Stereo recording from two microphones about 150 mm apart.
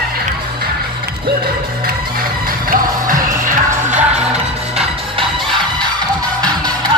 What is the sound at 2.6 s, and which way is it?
Music, 65° right (ahead or behind).